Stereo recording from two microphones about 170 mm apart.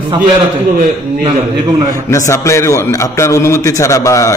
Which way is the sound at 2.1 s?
15° left (ahead or behind).